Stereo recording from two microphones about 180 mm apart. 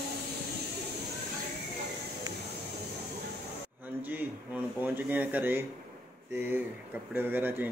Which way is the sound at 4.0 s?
10° right (ahead or behind).